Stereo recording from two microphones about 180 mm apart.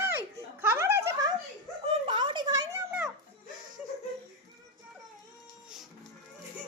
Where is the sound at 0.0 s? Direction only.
10° right (ahead or behind).